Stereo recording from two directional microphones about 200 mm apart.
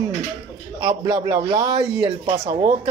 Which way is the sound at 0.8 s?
20° right (ahead or behind).